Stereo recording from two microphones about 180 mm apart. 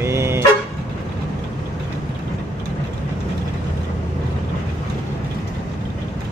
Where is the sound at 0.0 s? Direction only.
15° right (ahead or behind).